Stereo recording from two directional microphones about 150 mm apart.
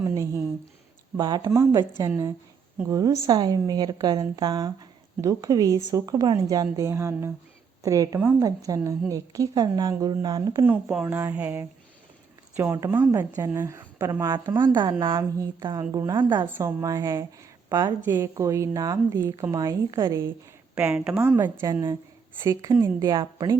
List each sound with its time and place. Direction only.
0.0 s a woman's voice: 20° right (ahead or behind)
10.7 s a woman's voice: 10° right (ahead or behind)
14.6 s a woman's voice: 30° right (ahead or behind)
16.5 s a woman's voice: 20° right (ahead or behind)
18.0 s a woman's voice: 15° right (ahead or behind)
20.7 s a woman's voice: 5° right (ahead or behind); by 23.6 s 25° right (ahead or behind)